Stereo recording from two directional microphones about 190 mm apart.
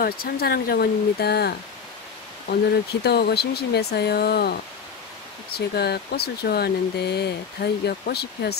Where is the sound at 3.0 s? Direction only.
60° left (ahead or behind).